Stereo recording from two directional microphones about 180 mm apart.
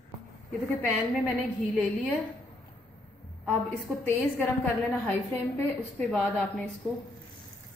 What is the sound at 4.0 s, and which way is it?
Speech, 10° left (ahead or behind).